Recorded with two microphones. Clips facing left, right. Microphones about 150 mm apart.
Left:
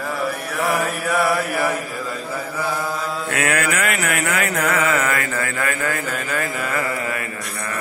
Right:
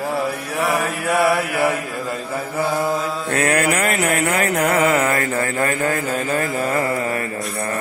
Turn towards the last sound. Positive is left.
turn(degrees=-30)  # may be behind; listen again after turning